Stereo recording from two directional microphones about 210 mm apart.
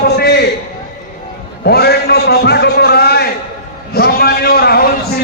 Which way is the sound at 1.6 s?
50° left (ahead or behind).